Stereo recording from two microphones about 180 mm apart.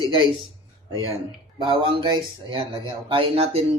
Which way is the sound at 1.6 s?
25° right (ahead or behind).